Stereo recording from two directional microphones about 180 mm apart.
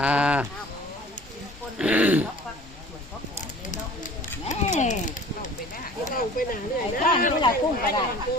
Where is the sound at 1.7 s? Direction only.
5° right (ahead or behind).